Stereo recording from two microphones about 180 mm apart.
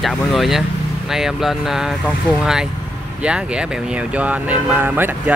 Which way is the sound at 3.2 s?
5° right (ahead or behind).